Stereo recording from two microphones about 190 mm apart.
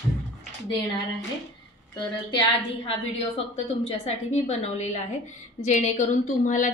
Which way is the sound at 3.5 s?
35° left (ahead or behind).